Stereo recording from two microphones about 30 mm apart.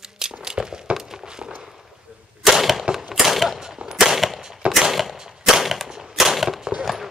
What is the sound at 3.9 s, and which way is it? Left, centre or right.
Gunshot, centre.